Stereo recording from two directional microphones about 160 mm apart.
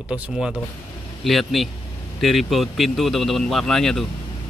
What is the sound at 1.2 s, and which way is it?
Speech, centre (ahead or behind).